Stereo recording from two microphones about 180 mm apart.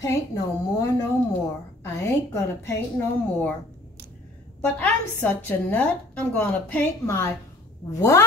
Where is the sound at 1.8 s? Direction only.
15° left (ahead or behind).